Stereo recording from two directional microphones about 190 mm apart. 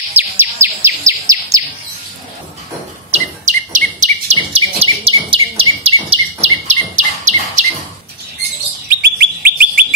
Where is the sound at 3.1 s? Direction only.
40° right (ahead or behind).